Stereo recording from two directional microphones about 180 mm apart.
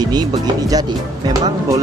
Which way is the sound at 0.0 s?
20° right (ahead or behind).